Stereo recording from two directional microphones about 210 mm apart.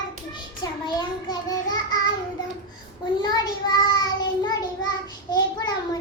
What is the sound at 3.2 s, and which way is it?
Child singing, 20° left (ahead or behind).